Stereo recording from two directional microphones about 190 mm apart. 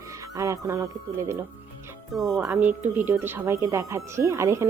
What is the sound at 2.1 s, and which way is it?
Speech, centre (ahead or behind).